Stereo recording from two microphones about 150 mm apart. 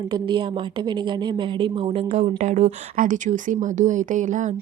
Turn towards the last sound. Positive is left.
turn(degrees=-55)  # may be behind; listen again after turning